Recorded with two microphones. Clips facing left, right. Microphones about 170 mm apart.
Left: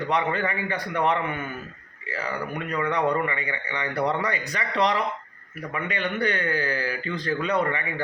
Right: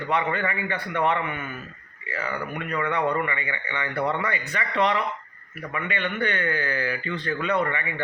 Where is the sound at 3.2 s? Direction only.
35° left (ahead or behind).